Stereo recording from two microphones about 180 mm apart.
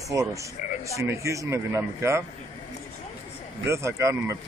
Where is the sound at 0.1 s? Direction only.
15° right (ahead or behind).